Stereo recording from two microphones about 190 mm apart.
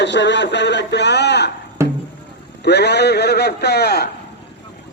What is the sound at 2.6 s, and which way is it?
Speech, 60° left (ahead or behind).